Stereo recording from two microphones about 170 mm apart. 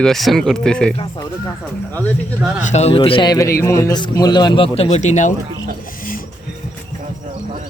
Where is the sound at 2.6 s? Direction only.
40° left (ahead or behind).